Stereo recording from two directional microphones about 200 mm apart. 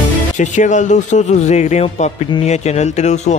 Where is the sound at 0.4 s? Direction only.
35° left (ahead or behind).